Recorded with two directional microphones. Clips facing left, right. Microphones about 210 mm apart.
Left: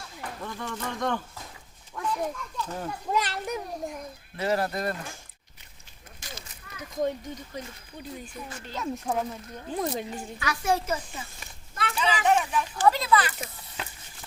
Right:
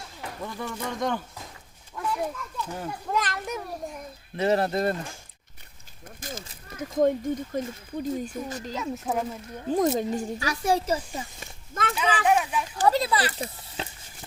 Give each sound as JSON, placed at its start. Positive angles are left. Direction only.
{"t": 0.4, "sound": "a child's voice", "side_deg": -10}
{"t": 3.1, "sound": "a child's voice", "side_deg": 10}
{"t": 4.4, "sound": "speech", "side_deg": -25}
{"t": 6.1, "sound": "a sound", "side_deg": -50}
{"t": 6.7, "sound": "speech", "side_deg": -50}
{"t": 8.7, "sound": "a child's voice", "side_deg": 0}
{"t": 9.6, "sound": "a child's voice", "side_deg": -40}
{"t": 11.9, "sound": "a sound", "side_deg": -10}
{"t": 12.7, "sound": "a sound", "side_deg": -35}